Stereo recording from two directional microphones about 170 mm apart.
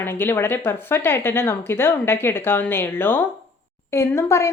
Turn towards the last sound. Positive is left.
turn(degrees=15)  # may be behind; listen again after turning